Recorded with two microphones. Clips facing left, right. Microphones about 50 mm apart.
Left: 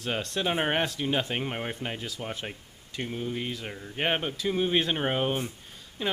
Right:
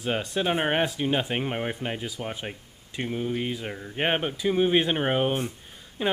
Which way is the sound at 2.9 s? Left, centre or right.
Centre.